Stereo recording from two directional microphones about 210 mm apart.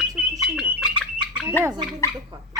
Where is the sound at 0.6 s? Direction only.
5° right (ahead or behind).